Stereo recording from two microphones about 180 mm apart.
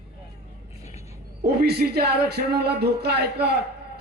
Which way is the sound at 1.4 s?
65° right (ahead or behind).